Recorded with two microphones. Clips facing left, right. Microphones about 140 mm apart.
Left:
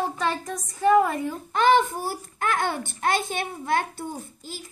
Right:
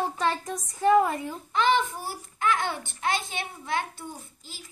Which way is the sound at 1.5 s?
45° left (ahead or behind).